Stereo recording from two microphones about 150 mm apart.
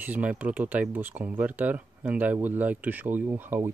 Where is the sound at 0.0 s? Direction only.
10° right (ahead or behind).